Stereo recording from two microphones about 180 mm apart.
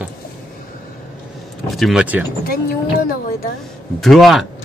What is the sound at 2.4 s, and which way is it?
Speech, 55° left (ahead or behind).